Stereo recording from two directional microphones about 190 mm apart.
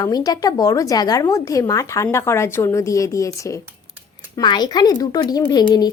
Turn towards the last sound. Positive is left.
turn(degrees=20)  # may be behind; listen again after turning